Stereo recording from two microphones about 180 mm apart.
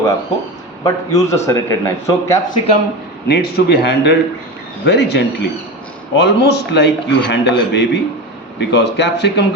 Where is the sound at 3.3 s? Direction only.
65° left (ahead or behind).